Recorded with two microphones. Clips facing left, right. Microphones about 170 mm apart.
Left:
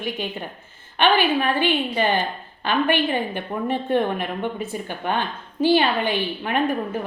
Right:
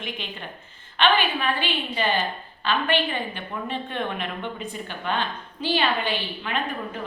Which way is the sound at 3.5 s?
40° left (ahead or behind).